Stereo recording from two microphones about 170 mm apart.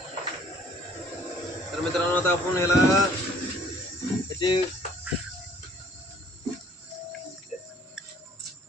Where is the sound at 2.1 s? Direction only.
15° left (ahead or behind).